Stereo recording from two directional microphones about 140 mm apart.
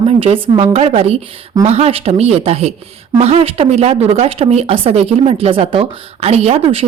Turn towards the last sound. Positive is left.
turn(degrees=-45)  # may be behind; listen again after turning